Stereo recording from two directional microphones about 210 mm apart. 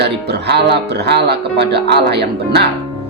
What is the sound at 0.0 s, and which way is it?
Speech, 50° right (ahead or behind).